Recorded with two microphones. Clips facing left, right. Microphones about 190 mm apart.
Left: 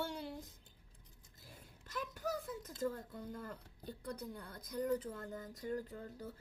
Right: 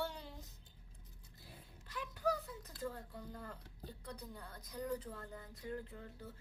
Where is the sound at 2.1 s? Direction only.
45° left (ahead or behind).